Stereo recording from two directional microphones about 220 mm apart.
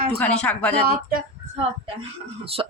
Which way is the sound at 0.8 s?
45° right (ahead or behind).